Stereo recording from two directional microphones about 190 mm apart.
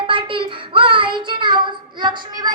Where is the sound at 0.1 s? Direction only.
25° right (ahead or behind).